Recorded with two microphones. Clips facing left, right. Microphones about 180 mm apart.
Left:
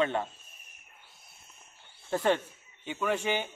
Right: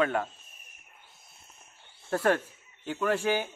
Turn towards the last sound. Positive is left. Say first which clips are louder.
# right 3 dB
turn(degrees=-10)  # may be behind; listen again after turning